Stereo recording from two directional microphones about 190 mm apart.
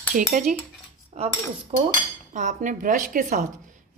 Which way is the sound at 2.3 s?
40° right (ahead or behind).